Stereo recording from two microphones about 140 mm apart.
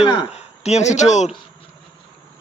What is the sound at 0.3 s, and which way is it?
Speech, 50° left (ahead or behind).